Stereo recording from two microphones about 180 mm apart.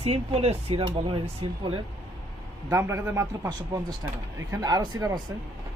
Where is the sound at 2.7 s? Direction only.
15° right (ahead or behind).